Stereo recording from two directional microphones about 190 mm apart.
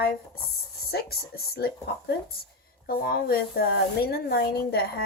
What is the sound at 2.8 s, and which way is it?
Speech, 50° left (ahead or behind).